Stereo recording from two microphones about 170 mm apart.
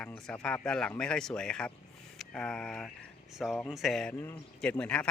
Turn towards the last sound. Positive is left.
turn(degrees=5)  # may be behind; listen again after turning